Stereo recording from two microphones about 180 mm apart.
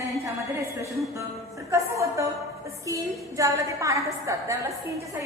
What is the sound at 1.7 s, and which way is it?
A woman's voice, 15° right (ahead or behind).